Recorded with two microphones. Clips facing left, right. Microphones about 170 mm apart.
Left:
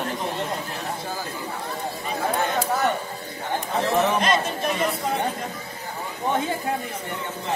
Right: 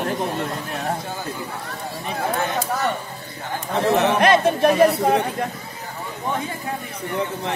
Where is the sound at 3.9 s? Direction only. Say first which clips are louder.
Right 4 dB; 65° right (ahead or behind).